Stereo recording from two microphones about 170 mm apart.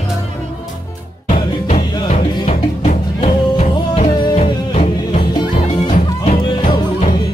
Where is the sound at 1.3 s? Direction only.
40° left (ahead or behind).